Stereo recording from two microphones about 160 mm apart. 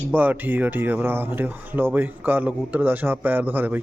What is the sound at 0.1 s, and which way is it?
Speech, 10° right (ahead or behind).